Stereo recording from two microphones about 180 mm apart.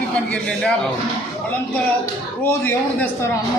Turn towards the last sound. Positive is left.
turn(degrees=10)  # may be behind; listen again after turning